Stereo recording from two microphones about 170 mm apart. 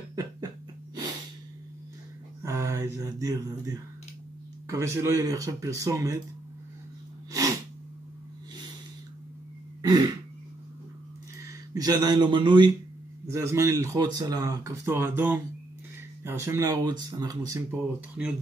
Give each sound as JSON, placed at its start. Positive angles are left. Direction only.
{"t": 0.1, "sound": "a sound", "side_deg": -20}
{"t": 2.4, "sound": "speech", "side_deg": -15}
{"t": 7.3, "sound": "sneeze", "side_deg": -20}
{"t": 9.8, "sound": "throat clearing", "side_deg": -25}
{"t": 11.7, "sound": "speech", "side_deg": -20}
{"t": 17.6, "sound": "speech", "side_deg": -5}